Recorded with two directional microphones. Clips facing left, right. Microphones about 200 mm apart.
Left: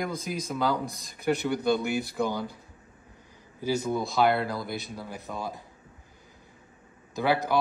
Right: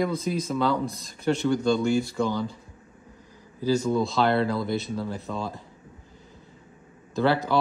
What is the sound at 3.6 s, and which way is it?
Speech, 20° left (ahead or behind).